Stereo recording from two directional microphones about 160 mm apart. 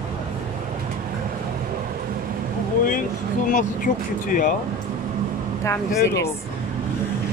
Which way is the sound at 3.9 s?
50° left (ahead or behind).